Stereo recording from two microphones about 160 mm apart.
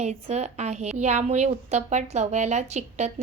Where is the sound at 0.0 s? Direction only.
40° right (ahead or behind).